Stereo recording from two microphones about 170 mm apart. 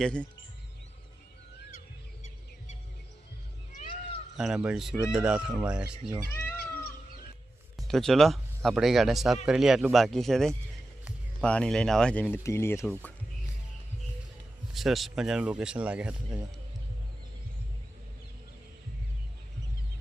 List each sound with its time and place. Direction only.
0.0 s speech: 5° left (ahead or behind)
3.7 s a sound: 45° left (ahead or behind)
4.4 s speech: 5° right (ahead or behind)
6.3 s cat: 15° left (ahead or behind)
7.8 s speech: centre (ahead or behind)
14.7 s speech: centre (ahead or behind)